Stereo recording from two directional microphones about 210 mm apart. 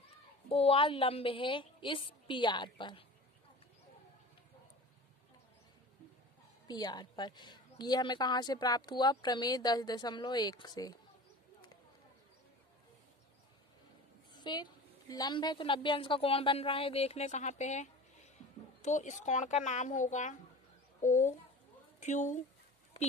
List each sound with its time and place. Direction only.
0.5 s a woman's voice: 25° left (ahead or behind)
6.7 s a woman's voice: 20° left (ahead or behind)
14.3 s a woman's voice: 20° left (ahead or behind); by 22.4 s 35° left (ahead or behind)